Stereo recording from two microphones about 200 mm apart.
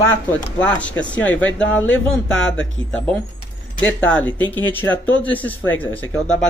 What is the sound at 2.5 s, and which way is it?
Speech, 70° left (ahead or behind).